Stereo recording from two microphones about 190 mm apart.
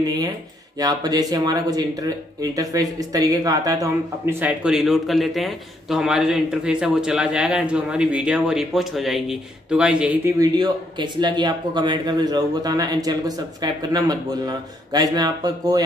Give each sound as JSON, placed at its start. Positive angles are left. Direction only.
{"t": 0.7, "sound": "speech", "side_deg": -20}